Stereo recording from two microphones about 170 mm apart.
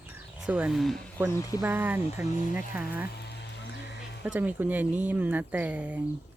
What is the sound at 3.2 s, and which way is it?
Music, 80° left.